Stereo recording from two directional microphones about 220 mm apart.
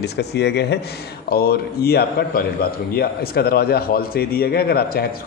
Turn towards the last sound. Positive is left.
turn(degrees=45)  # may be behind; listen again after turning